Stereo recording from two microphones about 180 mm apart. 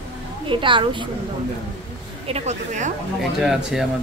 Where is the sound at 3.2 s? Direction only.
5° right (ahead or behind).